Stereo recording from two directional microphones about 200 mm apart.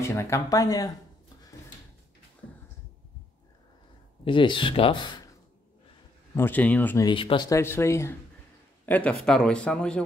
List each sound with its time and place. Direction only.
0.0 s speech: 15° left (ahead or behind)
4.2 s speech: 25° left (ahead or behind)
6.3 s speech: 10° left (ahead or behind)
7.1 s a man's voice: 25° left (ahead or behind); by 10.0 s 5° left (ahead or behind)